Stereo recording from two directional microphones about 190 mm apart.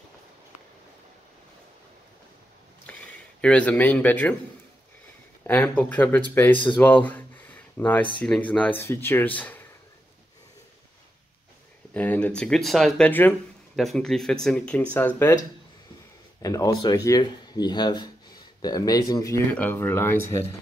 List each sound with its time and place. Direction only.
2.9 s speech: 5° left (ahead or behind)
5.5 s speech: 10° left (ahead or behind)
11.9 s speech: 10° left (ahead or behind)
16.4 s speech: 20° left (ahead or behind)